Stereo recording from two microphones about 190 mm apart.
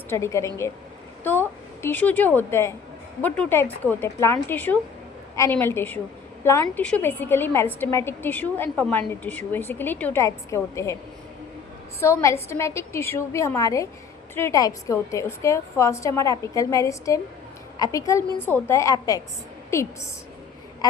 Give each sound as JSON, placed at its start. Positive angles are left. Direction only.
{"t": 0.1, "sound": "a woman's voice", "side_deg": 15}
{"t": 11.9, "sound": "a woman's voice", "side_deg": 15}